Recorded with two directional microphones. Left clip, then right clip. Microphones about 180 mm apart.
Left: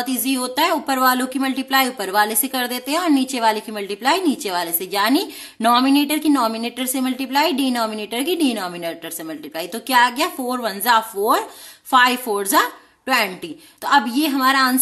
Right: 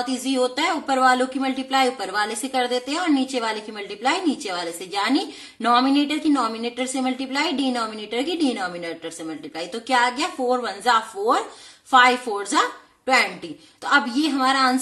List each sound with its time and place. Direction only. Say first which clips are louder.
0.0 s speech: right 1 dB; 40° left (ahead or behind)